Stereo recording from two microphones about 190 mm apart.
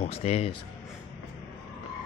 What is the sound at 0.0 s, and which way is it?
Speech, 30° left (ahead or behind).